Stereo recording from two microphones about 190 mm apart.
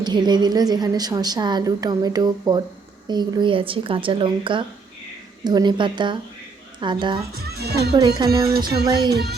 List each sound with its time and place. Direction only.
0.0 s a woman's voice: 25° right (ahead or behind)
7.4 s music: 60° right (ahead or behind)
7.9 s a woman's voice: 20° right (ahead or behind)
8.7 s music: 60° right (ahead or behind)